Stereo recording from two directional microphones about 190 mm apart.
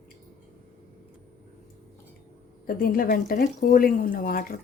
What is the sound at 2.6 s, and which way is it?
Speech, 50° left (ahead or behind).